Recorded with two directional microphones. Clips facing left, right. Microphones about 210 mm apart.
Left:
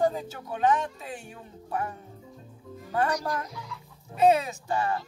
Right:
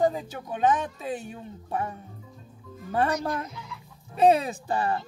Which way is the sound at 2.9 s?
25° right (ahead or behind).